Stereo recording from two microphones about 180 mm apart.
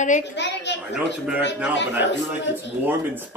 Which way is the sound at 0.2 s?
75° left (ahead or behind).